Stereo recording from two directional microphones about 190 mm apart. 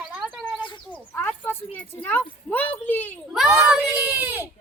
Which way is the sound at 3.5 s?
5° right (ahead or behind).